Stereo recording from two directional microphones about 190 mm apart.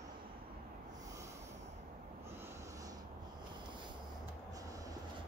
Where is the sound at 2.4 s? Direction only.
15° right (ahead or behind).